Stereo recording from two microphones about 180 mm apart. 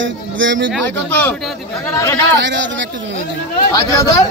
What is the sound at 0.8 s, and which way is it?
Speech, 10° left (ahead or behind).